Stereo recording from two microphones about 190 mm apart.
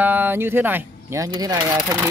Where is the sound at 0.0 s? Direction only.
10° right (ahead or behind).